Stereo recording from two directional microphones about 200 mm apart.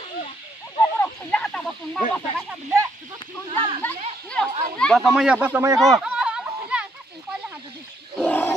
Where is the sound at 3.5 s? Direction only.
25° right (ahead or behind).